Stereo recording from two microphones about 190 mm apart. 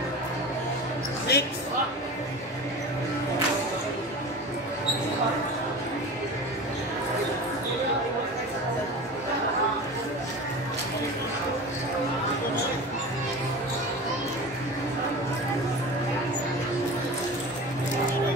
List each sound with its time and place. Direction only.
1.3 s basketball bounce: 60° left (ahead or behind)